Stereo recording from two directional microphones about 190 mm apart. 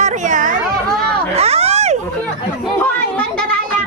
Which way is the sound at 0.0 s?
40° right (ahead or behind).